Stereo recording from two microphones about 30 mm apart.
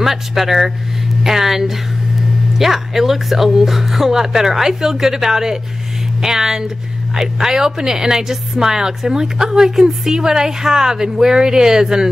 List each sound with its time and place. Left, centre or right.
0.0 s a woman's voice: centre
2.6 s a woman's voice: centre